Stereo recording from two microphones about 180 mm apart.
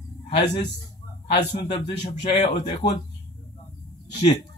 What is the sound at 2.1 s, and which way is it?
Speech, 40° left (ahead or behind).